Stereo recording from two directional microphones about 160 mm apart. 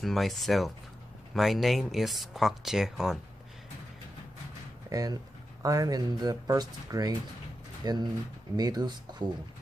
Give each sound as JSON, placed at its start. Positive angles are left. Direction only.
{"t": 0.0, "sound": "speech", "side_deg": 0}
{"t": 4.8, "sound": "speech", "side_deg": -20}